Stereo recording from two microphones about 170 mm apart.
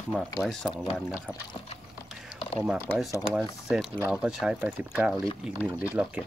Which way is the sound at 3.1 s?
Centre (ahead or behind).